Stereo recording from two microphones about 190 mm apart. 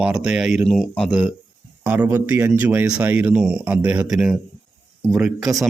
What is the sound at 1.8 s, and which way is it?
Speech, 10° right (ahead or behind).